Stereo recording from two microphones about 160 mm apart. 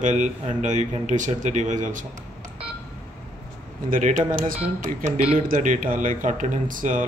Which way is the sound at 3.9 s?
55° right (ahead or behind).